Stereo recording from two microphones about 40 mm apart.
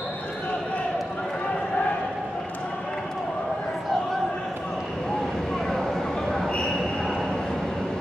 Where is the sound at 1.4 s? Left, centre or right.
Left.